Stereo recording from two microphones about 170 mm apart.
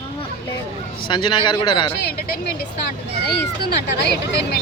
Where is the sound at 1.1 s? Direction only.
30° left (ahead or behind).